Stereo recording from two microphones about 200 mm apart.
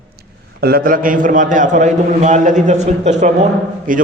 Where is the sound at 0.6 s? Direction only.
45° right (ahead or behind).